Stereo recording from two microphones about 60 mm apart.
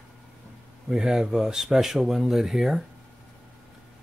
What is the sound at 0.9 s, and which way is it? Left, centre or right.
Speech, centre.